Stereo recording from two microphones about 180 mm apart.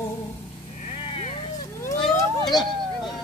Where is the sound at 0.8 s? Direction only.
35° left (ahead or behind).